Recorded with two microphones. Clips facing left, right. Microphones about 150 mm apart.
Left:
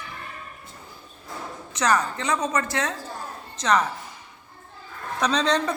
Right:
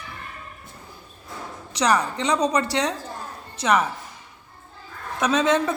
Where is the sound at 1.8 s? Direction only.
15° right (ahead or behind).